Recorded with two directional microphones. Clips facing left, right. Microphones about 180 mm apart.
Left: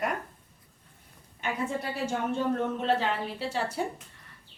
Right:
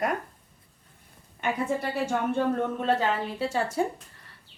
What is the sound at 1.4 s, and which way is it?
A woman's voice, 60° right (ahead or behind).